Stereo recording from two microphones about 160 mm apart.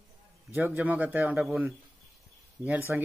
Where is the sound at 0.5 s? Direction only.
10° right (ahead or behind).